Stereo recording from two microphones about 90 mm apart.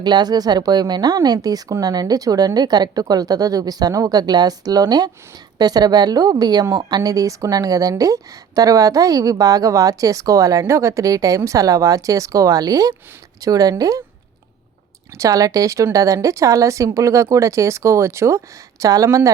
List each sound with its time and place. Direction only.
0.0 s speech: 50° right (ahead or behind)
15.2 s speech: 40° right (ahead or behind)